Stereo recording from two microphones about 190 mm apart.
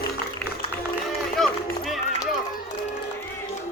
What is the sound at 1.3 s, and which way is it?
Run, centre (ahead or behind).